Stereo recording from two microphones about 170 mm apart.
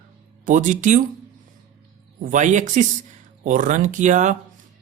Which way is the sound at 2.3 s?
45° right (ahead or behind).